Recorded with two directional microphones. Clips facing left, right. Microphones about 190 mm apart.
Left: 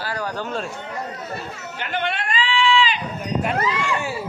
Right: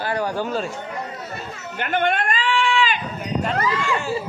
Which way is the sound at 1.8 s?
50° right (ahead or behind).